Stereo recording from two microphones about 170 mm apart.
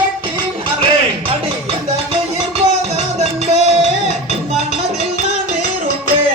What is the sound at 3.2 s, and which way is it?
Music, 40° right (ahead or behind).